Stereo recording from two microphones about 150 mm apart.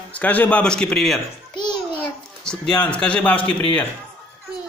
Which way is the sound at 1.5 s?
30° left (ahead or behind).